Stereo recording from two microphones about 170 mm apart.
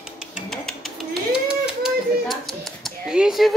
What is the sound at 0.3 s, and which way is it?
Music, centre (ahead or behind).